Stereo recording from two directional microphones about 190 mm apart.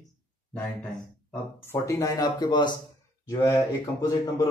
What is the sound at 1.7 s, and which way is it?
A man's voice, 15° left (ahead or behind).